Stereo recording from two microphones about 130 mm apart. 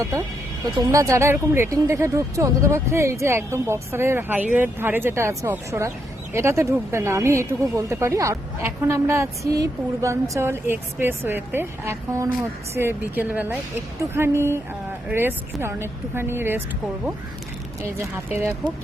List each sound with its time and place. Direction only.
0.8 s speech: 25° right (ahead or behind)